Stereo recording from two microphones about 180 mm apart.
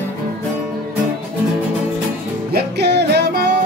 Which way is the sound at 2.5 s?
70° right (ahead or behind).